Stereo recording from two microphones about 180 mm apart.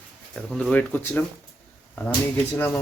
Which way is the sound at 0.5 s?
5° left (ahead or behind).